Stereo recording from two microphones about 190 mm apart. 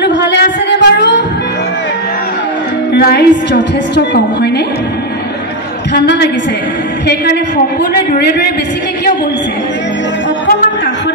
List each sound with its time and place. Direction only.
0.0 s a sound: 65° left (ahead or behind)
2.9 s a woman's voice: 60° left (ahead or behind)
5.9 s a woman's voice: 60° left (ahead or behind)
8.1 s a woman's voice: 60° left (ahead or behind)